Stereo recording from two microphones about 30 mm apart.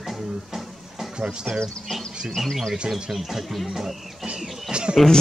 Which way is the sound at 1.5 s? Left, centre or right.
Right.